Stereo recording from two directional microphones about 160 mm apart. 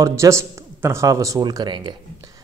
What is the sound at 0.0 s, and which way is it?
A man's voice, 20° right (ahead or behind).